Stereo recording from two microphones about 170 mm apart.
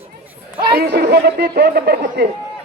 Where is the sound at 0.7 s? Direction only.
75° right (ahead or behind).